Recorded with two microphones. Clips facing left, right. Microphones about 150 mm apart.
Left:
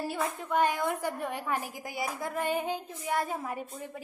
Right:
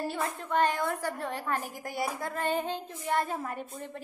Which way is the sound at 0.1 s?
10° left (ahead or behind).